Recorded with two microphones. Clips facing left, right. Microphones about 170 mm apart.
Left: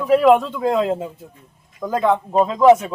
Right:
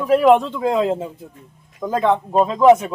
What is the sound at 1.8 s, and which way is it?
Speech, centre (ahead or behind).